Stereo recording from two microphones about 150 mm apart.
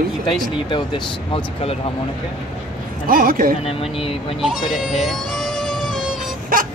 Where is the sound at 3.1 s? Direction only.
75° right (ahead or behind).